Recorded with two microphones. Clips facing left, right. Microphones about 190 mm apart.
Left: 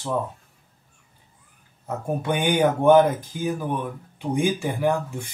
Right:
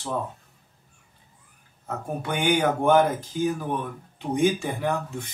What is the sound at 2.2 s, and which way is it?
A man's voice, 20° left (ahead or behind).